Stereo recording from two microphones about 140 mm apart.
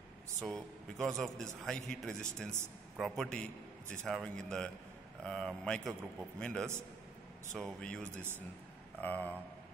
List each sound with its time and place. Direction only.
0.4 s a man's voice: 5° left (ahead or behind)